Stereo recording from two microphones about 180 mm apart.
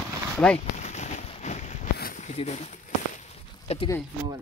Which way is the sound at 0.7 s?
40° left (ahead or behind).